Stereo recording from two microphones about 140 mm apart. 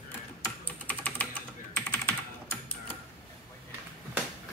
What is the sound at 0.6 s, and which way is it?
Typing, 10° left (ahead or behind).